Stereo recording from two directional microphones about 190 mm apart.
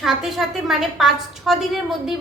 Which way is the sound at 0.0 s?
Centre (ahead or behind).